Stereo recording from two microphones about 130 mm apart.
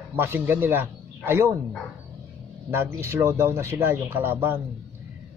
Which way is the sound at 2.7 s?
20° right (ahead or behind).